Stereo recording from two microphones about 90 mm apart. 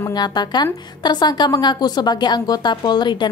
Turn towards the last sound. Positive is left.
turn(degrees=55)  # may be behind; listen again after turning